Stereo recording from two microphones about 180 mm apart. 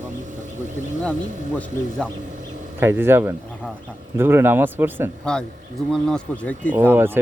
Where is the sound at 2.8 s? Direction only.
10° right (ahead or behind).